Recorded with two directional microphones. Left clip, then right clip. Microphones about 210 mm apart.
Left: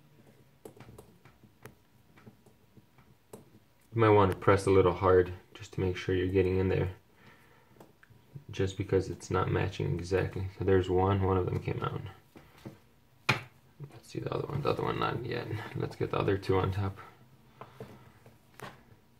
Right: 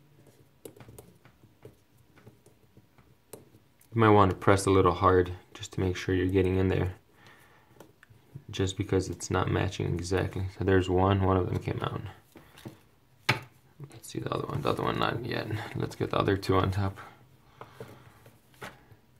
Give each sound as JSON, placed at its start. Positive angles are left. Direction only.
{"t": 3.9, "sound": "speech", "side_deg": -35}
{"t": 8.5, "sound": "speech", "side_deg": -35}
{"t": 14.0, "sound": "speech", "side_deg": -30}